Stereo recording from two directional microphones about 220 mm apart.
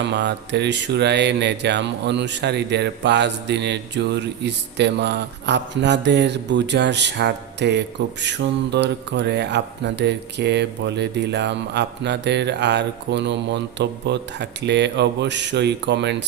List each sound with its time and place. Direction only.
0.0 s speech: 55° right (ahead or behind)